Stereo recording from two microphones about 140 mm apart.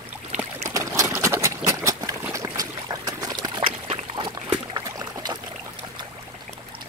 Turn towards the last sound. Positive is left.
turn(degrees=-25)  # may be behind; listen again after turning